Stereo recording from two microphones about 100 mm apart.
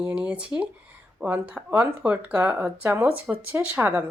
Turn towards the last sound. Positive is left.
turn(degrees=-20)  # may be behind; listen again after turning